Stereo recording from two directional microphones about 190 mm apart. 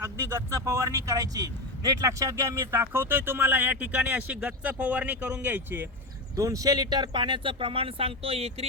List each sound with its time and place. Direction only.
0.0 s speech: 15° right (ahead or behind); by 8.6 s 30° right (ahead or behind)